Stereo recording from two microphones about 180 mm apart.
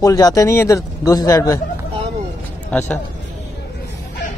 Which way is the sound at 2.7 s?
10° left (ahead or behind).